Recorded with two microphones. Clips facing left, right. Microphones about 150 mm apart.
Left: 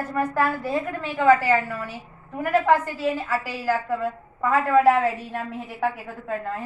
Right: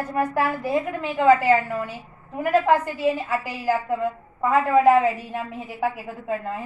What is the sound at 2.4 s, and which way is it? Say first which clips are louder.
A woman's voice: right 1 dB; 15° right (ahead or behind).